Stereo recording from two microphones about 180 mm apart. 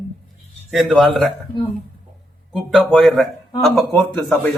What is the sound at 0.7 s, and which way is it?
Speech, centre (ahead or behind).